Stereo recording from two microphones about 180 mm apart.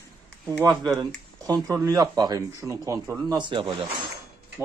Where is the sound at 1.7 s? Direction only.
20° right (ahead or behind).